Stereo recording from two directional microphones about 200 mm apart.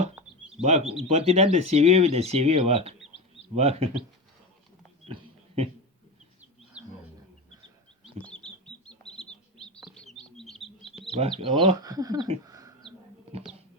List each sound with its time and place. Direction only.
0.6 s speech: 35° right (ahead or behind)
6.8 s wild animals: 5° right (ahead or behind)
8.2 s bird: 5° left (ahead or behind)
11.2 s speech: 30° right (ahead or behind)